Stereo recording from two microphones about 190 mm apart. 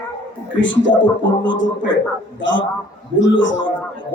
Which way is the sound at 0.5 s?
75° left (ahead or behind).